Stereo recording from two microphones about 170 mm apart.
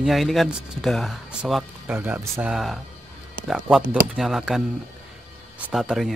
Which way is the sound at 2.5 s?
Centre (ahead or behind).